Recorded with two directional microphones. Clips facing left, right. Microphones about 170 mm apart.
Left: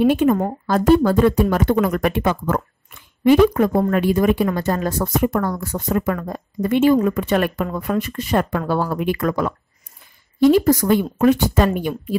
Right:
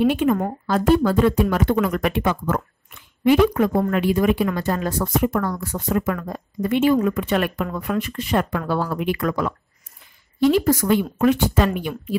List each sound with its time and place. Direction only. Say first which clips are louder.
0.0 s speech: left 3 dB; 40° left (ahead or behind)